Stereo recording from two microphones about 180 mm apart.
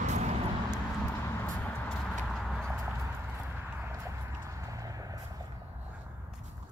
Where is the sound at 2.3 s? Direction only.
Centre (ahead or behind).